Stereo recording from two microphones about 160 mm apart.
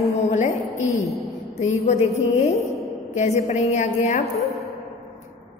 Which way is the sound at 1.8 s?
40° left (ahead or behind).